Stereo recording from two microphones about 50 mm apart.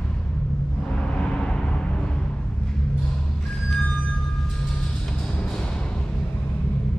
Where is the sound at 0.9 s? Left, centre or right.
Centre.